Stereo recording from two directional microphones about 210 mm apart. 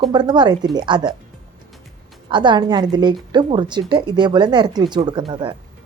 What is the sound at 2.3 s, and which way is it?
A woman's voice, 20° right (ahead or behind).